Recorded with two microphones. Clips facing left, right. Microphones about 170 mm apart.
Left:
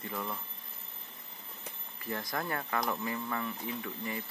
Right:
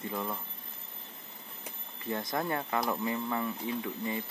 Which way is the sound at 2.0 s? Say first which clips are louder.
Right 3 dB; 25° right (ahead or behind).